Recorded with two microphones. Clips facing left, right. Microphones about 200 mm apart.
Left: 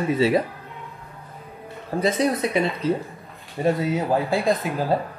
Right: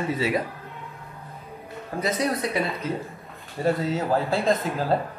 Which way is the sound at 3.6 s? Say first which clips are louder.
Left 2 dB; 15° left (ahead or behind).